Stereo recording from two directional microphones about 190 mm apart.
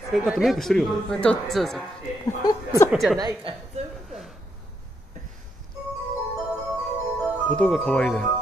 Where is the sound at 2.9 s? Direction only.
5° right (ahead or behind).